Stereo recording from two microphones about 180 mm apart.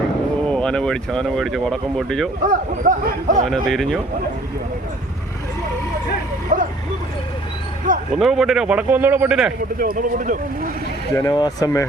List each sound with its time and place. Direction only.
0.5 s speech: 5° left (ahead or behind)
2.4 s speech: 50° right (ahead or behind)
3.4 s speech: centre (ahead or behind)
6.5 s speech: 45° right (ahead or behind)
7.9 s speech: 50° right (ahead or behind)
8.2 s speech: centre (ahead or behind)
9.7 s speech: 50° right (ahead or behind)
11.1 s speech: 20° left (ahead or behind)